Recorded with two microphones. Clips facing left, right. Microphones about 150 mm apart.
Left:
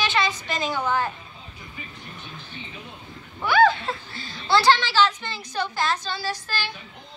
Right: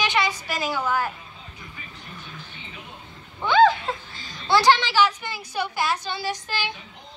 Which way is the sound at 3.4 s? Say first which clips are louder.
Right 1 dB; 20° right (ahead or behind).